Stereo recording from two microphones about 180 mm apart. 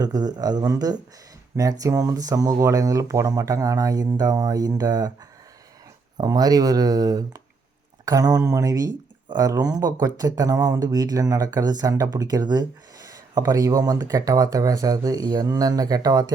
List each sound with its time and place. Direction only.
0.0 s speech: 20° right (ahead or behind)
6.1 s speech: 20° right (ahead or behind)